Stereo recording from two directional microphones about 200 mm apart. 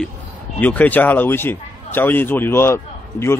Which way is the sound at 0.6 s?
10° left (ahead or behind).